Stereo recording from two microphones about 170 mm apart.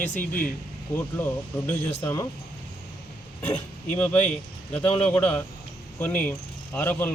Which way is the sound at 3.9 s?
10° left (ahead or behind).